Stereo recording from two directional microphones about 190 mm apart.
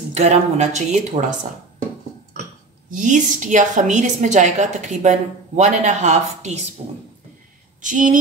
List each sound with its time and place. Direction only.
0.1 s a woman's voice: 35° right (ahead or behind)
2.9 s a woman's voice: 45° right (ahead or behind)